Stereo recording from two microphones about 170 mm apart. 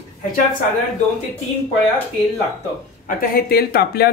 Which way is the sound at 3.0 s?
60° left (ahead or behind).